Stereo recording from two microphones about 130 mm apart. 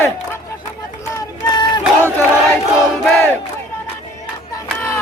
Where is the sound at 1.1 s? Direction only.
35° left (ahead or behind).